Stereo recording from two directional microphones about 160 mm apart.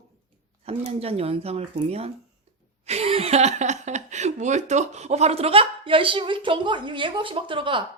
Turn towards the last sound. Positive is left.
turn(degrees=-30)  # may be behind; listen again after turning